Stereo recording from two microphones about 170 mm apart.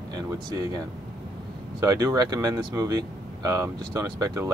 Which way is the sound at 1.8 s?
20° right (ahead or behind).